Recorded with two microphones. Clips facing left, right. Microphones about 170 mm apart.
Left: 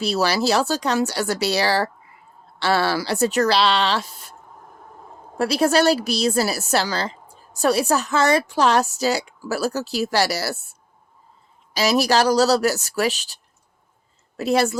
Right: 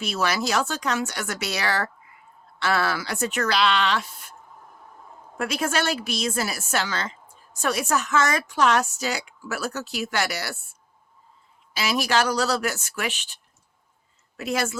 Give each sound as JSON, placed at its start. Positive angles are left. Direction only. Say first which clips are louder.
{"t": 0.0, "sound": "a woman's voice", "louder": "left 5 dB", "side_deg": 35}
{"t": 5.4, "sound": "a woman's voice", "louder": "left 8 dB", "side_deg": 35}